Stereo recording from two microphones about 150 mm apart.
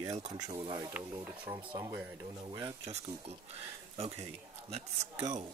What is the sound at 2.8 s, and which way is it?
A man's voice, 40° right (ahead or behind).